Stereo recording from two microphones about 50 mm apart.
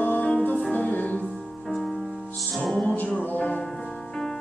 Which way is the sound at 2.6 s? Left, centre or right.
Centre.